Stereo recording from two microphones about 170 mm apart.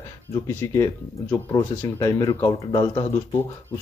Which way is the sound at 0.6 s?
15° left (ahead or behind).